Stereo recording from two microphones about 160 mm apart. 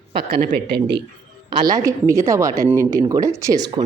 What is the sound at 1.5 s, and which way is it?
Speech, 20° right (ahead or behind).